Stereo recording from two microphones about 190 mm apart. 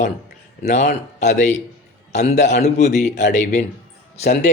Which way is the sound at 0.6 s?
40° left (ahead or behind).